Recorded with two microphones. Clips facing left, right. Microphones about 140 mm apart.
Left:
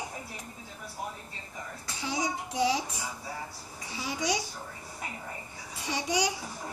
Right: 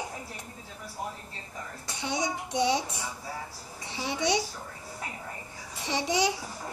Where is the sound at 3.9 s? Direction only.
25° right (ahead or behind).